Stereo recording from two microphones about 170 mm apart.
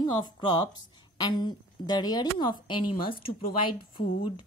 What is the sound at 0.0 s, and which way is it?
A woman's voice, 25° left (ahead or behind).